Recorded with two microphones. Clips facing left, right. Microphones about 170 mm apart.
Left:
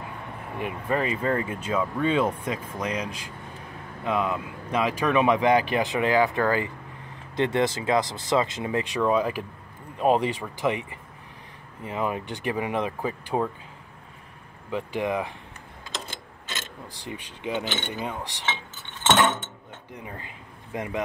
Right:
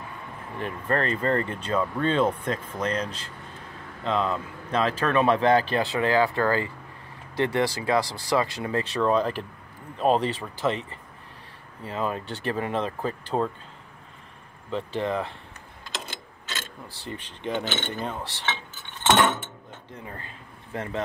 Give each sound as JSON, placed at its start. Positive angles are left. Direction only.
{"t": 0.6, "sound": "speech", "side_deg": 10}
{"t": 14.7, "sound": "speech", "side_deg": 15}
{"t": 16.8, "sound": "speech", "side_deg": 15}
{"t": 19.9, "sound": "speech", "side_deg": 15}